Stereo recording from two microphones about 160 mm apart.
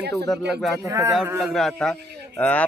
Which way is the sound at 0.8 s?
20° right (ahead or behind).